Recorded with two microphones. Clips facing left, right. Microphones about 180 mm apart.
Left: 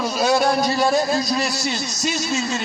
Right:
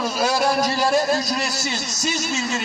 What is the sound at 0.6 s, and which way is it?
A man's voice, 25° left (ahead or behind).